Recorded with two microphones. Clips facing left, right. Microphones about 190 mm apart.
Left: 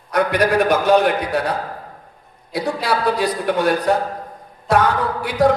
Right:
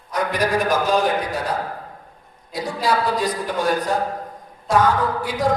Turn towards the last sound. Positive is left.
turn(degrees=65)  # may be behind; listen again after turning